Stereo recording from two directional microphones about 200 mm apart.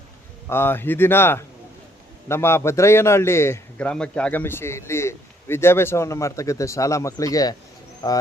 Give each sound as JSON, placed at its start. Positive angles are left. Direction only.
{"t": 0.4, "sound": "a man's voice", "side_deg": 10}